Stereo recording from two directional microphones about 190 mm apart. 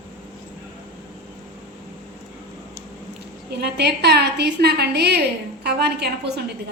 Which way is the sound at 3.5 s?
60° right (ahead or behind).